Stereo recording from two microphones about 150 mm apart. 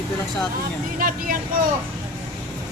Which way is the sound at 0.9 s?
70° right (ahead or behind).